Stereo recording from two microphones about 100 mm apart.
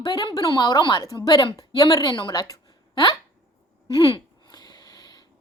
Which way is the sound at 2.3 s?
35° left (ahead or behind).